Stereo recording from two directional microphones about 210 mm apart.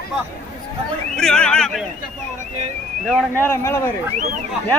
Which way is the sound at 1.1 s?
5° left (ahead or behind).